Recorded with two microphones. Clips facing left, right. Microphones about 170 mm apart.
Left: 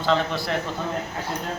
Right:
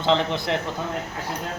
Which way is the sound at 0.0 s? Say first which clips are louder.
Right 1 dB; 20° right (ahead or behind).